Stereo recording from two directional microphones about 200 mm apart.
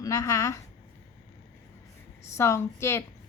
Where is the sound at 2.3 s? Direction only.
15° left (ahead or behind).